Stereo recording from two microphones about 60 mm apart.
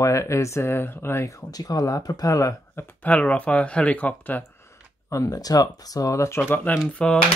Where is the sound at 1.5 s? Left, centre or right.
Left.